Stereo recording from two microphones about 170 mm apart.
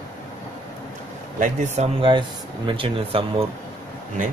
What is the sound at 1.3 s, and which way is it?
Speech, 45° right (ahead or behind).